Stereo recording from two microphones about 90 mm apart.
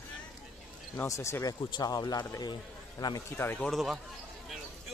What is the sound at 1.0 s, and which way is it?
Speech, 35° left (ahead or behind).